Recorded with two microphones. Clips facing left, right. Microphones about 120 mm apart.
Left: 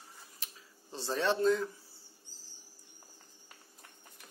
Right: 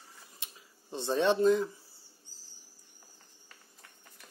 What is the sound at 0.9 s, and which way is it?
Speech, 20° right (ahead or behind).